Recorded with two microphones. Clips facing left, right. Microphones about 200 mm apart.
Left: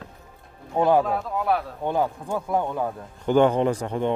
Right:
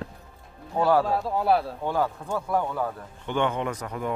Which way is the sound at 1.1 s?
30° right (ahead or behind).